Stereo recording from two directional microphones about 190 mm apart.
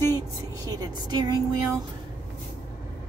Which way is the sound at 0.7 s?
20° right (ahead or behind).